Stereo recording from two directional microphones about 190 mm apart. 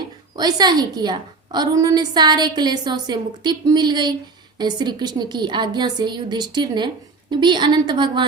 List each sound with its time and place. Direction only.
0.3 s a woman's voice: 20° right (ahead or behind)